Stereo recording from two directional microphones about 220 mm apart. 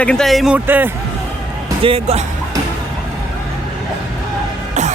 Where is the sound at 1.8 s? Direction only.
25° right (ahead or behind).